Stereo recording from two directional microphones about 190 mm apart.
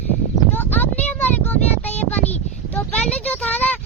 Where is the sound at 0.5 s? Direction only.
10° left (ahead or behind).